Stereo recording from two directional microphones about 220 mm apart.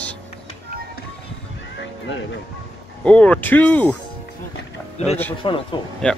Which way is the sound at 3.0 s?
5° left (ahead or behind).